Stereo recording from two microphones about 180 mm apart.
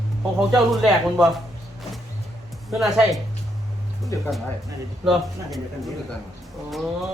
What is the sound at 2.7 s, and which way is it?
Speech, centre (ahead or behind).